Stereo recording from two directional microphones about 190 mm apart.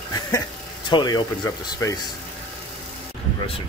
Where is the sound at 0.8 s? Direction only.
20° left (ahead or behind).